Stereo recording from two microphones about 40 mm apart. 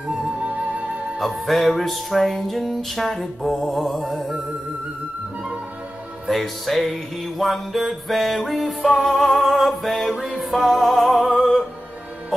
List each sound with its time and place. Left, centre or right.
0.1 s music: right
1.2 s music: centre
6.3 s music: centre